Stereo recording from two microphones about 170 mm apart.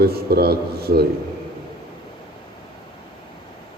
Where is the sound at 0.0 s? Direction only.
65° right (ahead or behind).